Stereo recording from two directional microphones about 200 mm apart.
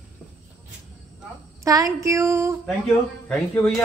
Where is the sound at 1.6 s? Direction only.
15° right (ahead or behind).